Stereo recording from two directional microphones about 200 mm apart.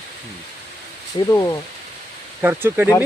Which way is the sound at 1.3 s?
15° left (ahead or behind).